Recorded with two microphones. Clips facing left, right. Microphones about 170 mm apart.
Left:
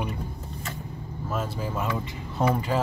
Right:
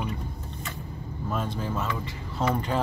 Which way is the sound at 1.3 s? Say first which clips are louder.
Even; 5° left (ahead or behind).